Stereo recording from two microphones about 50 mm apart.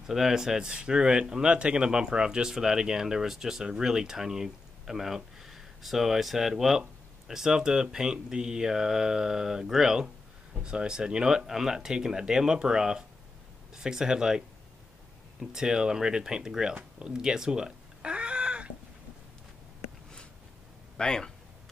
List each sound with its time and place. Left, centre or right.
0.0 s speech: centre
15.5 s speech: centre
17.0 s cat: centre
21.0 s speech: centre